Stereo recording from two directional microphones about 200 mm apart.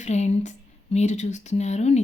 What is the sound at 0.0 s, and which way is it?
Speech, 35° left (ahead or behind).